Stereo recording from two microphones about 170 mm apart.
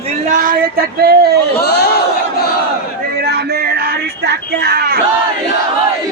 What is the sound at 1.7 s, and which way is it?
Crowd, 75° left (ahead or behind).